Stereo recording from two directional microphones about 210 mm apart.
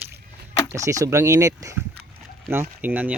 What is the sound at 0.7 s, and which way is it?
Speech, 15° right (ahead or behind).